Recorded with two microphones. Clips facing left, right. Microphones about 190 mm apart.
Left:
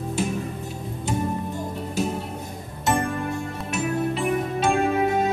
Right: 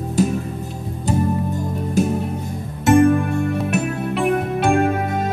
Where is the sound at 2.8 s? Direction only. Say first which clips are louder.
Right 11 dB; 60° right (ahead or behind).